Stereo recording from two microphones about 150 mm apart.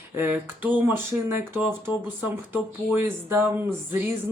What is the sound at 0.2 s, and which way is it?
Speech, 15° right (ahead or behind).